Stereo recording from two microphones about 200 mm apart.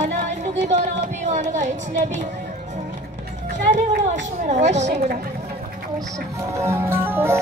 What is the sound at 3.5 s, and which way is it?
Run, 35° right (ahead or behind).